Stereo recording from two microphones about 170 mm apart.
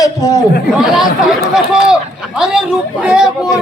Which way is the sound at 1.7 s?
5° right (ahead or behind).